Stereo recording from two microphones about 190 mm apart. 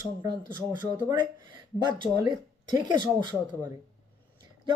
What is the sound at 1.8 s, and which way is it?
A woman's voice, 25° right (ahead or behind).